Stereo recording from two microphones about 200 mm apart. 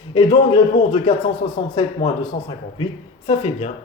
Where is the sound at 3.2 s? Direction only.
30° left (ahead or behind).